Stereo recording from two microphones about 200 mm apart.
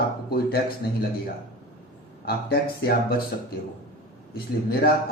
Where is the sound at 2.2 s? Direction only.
50° left (ahead or behind).